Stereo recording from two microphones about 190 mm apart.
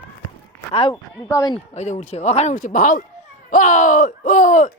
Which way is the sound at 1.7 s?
35° left (ahead or behind).